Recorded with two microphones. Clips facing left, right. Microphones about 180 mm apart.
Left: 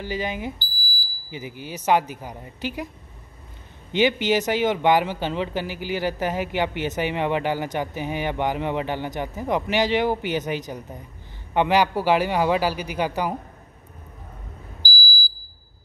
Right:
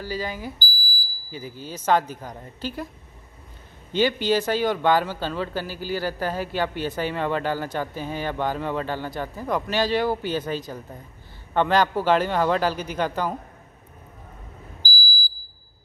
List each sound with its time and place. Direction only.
0.0 s speech: 20° left (ahead or behind)
3.9 s speech: 20° left (ahead or behind)